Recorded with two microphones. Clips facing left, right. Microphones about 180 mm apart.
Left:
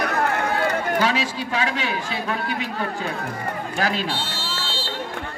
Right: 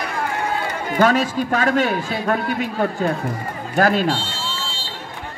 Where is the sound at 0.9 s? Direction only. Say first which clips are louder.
Right 5 dB; 50° right (ahead or behind).